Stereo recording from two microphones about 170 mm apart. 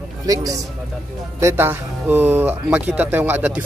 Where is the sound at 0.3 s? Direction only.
20° right (ahead or behind).